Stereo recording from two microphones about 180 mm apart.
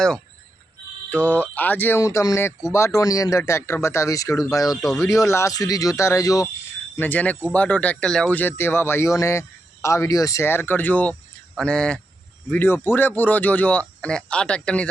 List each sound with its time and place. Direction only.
1.1 s speech: 10° left (ahead or behind)